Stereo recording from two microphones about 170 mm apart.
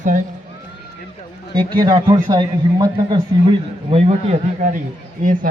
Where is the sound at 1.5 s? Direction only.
25° right (ahead or behind).